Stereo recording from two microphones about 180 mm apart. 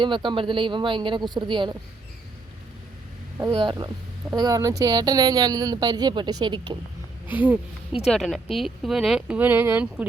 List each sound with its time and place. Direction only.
0.0 s speech: 25° right (ahead or behind)
3.5 s speech: 25° right (ahead or behind)
7.3 s speech: 10° right (ahead or behind)